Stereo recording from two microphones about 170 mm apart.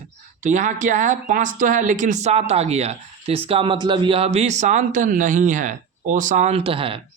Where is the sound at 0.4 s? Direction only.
50° right (ahead or behind); by 7.0 s 30° right (ahead or behind).